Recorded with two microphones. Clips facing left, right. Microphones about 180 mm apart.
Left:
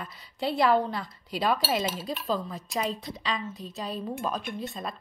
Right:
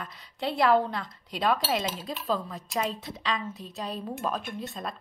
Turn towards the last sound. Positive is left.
turn(degrees=0)  # may be behind; listen again after turning